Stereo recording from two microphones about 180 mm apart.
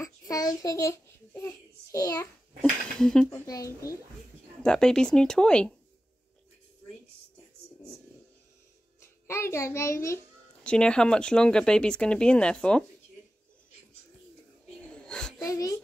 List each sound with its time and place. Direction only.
0.0 s babbling: 20° left (ahead or behind)
1.5 s child singing: 20° left (ahead or behind)
3.0 s speech: 5° left (ahead or behind)
3.4 s a child's voice: 20° left (ahead or behind)
4.6 s speech: 5° left (ahead or behind)
9.0 s a child's voice: 15° left (ahead or behind)
10.6 s speech: 5° left (ahead or behind)
15.0 s a sound: 5° left (ahead or behind)
15.3 s speech: 20° left (ahead or behind)